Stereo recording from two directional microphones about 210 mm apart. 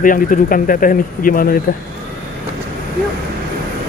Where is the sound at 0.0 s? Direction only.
40° left (ahead or behind).